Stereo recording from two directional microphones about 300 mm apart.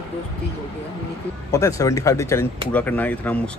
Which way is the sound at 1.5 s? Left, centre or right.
Centre.